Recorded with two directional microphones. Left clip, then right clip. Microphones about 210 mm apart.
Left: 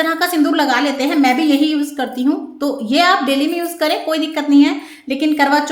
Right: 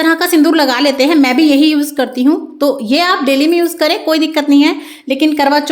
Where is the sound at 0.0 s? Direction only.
40° right (ahead or behind).